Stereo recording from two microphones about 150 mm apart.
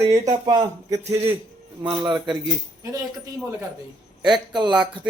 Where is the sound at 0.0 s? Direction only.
25° right (ahead or behind).